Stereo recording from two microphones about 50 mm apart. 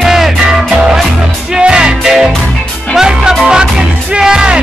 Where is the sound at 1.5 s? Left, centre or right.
Centre.